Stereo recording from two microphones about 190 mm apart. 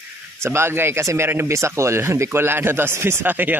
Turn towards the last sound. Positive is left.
turn(degrees=-10)  # may be behind; listen again after turning